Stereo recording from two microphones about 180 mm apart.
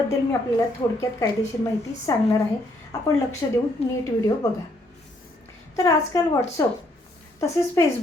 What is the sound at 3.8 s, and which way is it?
Speech, 35° left (ahead or behind).